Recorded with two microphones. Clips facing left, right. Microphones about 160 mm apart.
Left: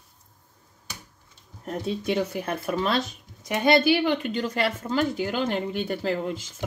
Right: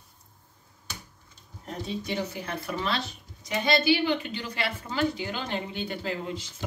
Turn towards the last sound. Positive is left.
turn(degrees=45)  # may be behind; listen again after turning